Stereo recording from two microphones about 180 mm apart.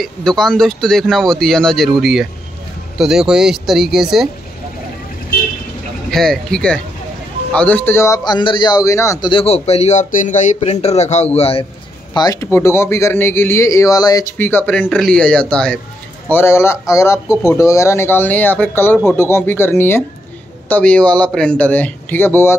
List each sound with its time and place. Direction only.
0.0 s speech: 5° left (ahead or behind)
6.0 s a man's voice: centre (ahead or behind); by 11.6 s 35° left (ahead or behind)
12.1 s a man's voice: 20° left (ahead or behind)